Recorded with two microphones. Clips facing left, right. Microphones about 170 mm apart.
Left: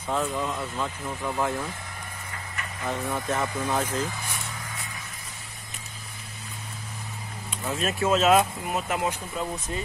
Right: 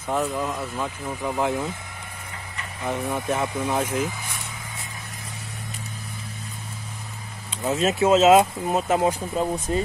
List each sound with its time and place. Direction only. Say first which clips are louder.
0.1 s speech: right 2 dB; 5° right (ahead or behind)
2.8 s speech: right 3 dB; 15° right (ahead or behind)
7.6 s speech: right 6 dB; 25° right (ahead or behind)